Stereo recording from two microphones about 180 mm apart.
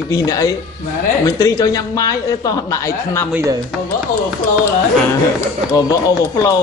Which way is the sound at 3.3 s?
15° right (ahead or behind).